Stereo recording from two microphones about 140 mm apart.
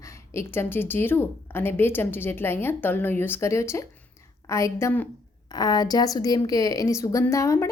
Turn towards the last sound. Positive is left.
turn(degrees=20)  # may be behind; listen again after turning